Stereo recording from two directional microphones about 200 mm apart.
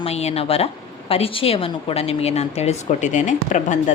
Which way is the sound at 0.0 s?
30° left (ahead or behind).